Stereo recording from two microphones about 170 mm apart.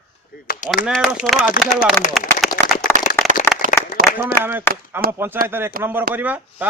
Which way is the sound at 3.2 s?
15° left (ahead or behind).